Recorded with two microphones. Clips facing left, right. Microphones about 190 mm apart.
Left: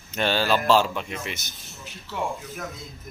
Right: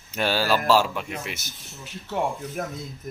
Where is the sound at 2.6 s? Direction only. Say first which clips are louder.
Right 8 dB; 50° right (ahead or behind).